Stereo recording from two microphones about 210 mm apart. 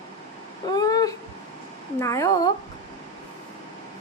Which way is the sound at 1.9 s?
15° left (ahead or behind).